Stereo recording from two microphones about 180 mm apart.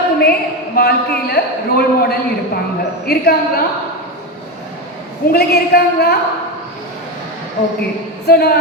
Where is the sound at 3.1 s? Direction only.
60° left (ahead or behind).